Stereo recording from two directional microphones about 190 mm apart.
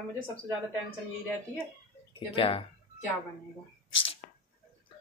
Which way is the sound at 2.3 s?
30° left (ahead or behind).